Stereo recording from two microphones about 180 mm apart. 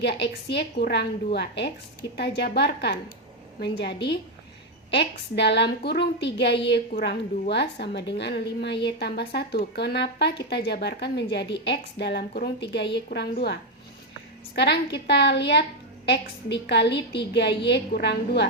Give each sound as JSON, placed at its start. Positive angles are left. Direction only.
{"t": 0.0, "sound": "a woman's voice", "side_deg": 70}
{"t": 14.5, "sound": "a woman's voice", "side_deg": 70}